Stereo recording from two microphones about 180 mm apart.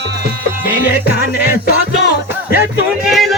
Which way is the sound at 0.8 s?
55° left (ahead or behind).